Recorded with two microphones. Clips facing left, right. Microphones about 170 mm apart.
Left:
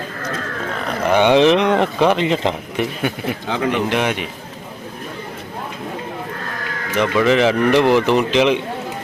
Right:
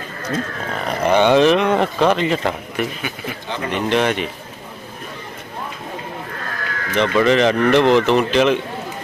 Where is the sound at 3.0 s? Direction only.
60° left (ahead or behind).